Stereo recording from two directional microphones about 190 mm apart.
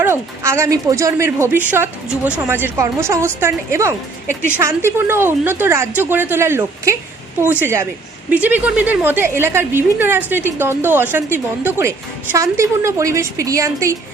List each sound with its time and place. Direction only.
0.0 s a woman's voice: 15° right (ahead or behind)